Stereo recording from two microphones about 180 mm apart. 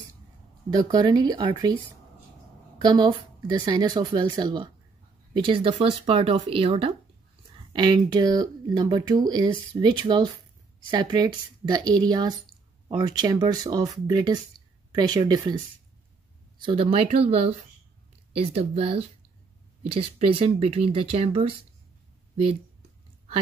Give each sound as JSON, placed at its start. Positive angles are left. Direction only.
{"t": 0.7, "sound": "speech", "side_deg": -25}
{"t": 2.8, "sound": "speech", "side_deg": -25}
{"t": 16.6, "sound": "speech", "side_deg": -30}